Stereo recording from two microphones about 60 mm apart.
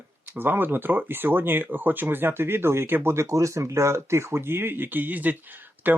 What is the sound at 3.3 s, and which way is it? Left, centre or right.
Speech, right.